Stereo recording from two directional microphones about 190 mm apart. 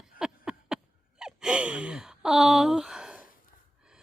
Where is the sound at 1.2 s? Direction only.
5° right (ahead or behind).